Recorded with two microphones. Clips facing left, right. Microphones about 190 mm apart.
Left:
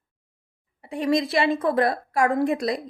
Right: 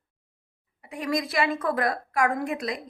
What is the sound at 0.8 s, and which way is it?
A woman's voice, 30° left (ahead or behind).